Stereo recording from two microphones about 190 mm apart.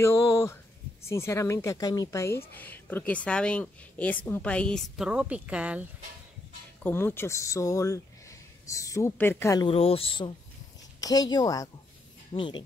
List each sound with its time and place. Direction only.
0.0 s a sound: 15° left (ahead or behind)
1.0 s speech: 15° left (ahead or behind); by 5.9 s 5° right (ahead or behind)
6.8 s speech: 10° left (ahead or behind)
9.7 s speech: 30° left (ahead or behind)